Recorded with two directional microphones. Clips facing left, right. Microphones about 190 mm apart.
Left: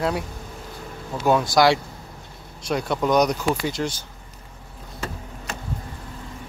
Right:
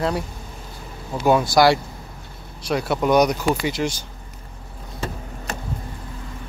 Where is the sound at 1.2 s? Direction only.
10° right (ahead or behind).